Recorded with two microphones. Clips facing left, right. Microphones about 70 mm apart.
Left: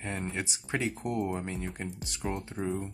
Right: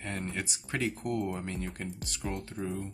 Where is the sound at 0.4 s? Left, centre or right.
Centre.